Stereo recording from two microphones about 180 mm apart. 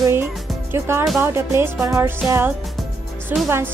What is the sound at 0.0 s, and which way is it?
Music, 15° right (ahead or behind).